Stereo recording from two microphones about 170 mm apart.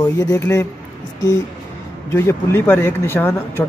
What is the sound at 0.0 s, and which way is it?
Speech, 20° left (ahead or behind).